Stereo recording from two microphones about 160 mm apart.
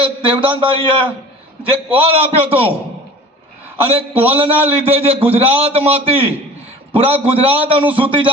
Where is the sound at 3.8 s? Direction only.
10° right (ahead or behind).